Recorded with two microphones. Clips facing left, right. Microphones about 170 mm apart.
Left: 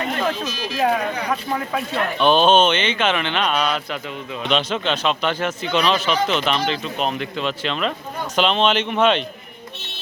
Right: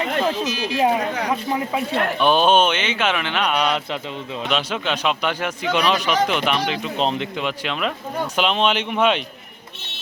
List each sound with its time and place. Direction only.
0.8 s speech: 20° right (ahead or behind)
7.0 s a man's voice: 25° right (ahead or behind)
7.3 s speech: 10° right (ahead or behind)